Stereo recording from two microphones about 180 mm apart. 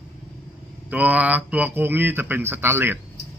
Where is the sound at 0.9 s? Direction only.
10° right (ahead or behind).